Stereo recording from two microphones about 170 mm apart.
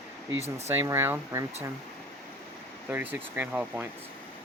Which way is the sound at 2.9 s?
10° right (ahead or behind).